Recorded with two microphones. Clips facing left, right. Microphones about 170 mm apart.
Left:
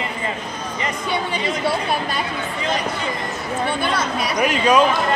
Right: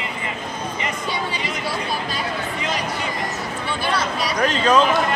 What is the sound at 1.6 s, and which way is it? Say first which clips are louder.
Speech: left 4 dB; 60° left (ahead or behind).